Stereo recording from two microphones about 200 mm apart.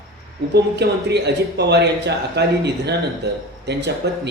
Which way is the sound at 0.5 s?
55° right (ahead or behind).